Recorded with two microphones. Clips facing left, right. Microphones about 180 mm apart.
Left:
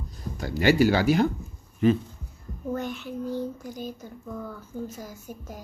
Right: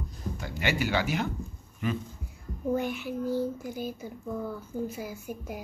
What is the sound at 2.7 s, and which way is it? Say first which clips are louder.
A child's voice: right 2 dB; 10° right (ahead or behind).